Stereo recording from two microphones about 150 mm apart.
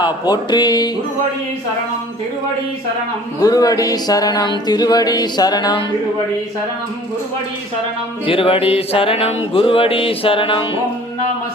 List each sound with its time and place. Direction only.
0.0 s music: 25° left (ahead or behind)
3.4 s music: 25° left (ahead or behind)
8.3 s speech: 35° left (ahead or behind)